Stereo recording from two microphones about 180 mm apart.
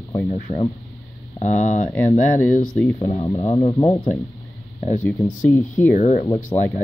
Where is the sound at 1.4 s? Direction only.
40° left (ahead or behind).